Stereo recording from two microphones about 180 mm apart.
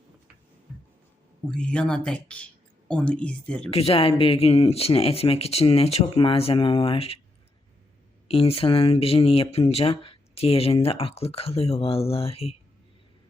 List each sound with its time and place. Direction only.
1.5 s speech: 5° left (ahead or behind)
3.7 s speech: 35° left (ahead or behind)
8.3 s speech: 30° left (ahead or behind)